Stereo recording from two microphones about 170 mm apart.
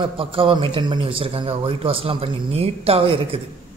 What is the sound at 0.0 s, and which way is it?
A man's voice, 30° right (ahead or behind).